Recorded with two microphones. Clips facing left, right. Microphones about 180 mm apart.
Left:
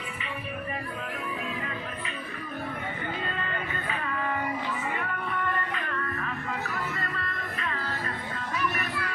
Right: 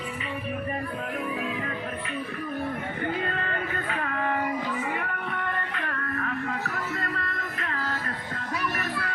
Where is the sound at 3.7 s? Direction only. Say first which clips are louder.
Right 2 dB; 60° right (ahead or behind).